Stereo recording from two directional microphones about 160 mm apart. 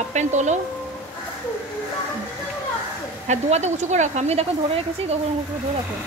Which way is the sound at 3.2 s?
45° right (ahead or behind).